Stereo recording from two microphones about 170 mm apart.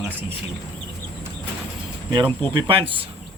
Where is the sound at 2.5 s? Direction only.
30° right (ahead or behind).